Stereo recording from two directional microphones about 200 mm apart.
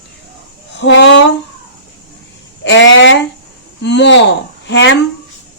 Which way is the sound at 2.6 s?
65° left (ahead or behind).